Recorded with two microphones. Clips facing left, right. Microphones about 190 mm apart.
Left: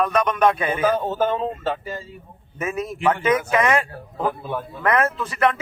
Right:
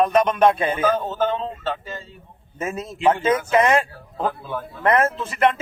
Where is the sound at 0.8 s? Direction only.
10° left (ahead or behind).